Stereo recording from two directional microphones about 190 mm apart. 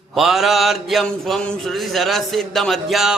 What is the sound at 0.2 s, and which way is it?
A man's voice, centre (ahead or behind).